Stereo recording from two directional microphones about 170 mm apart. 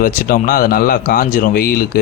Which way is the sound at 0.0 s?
55° left (ahead or behind).